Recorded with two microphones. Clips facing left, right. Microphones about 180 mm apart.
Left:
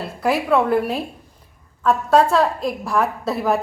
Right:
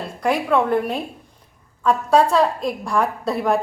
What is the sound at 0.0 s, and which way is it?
A woman's voice, 5° left (ahead or behind).